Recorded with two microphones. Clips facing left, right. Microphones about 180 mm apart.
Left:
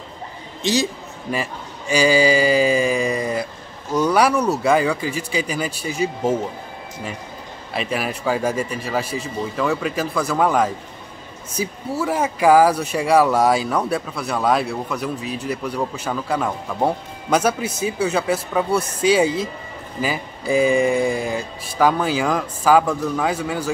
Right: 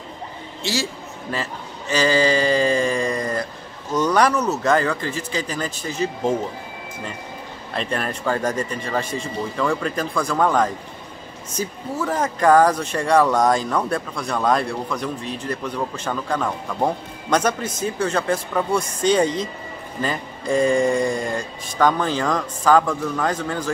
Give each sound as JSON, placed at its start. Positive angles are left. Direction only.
{"t": 0.6, "sound": "a man's voice", "side_deg": 20}
{"t": 7.7, "sound": "speech", "side_deg": 5}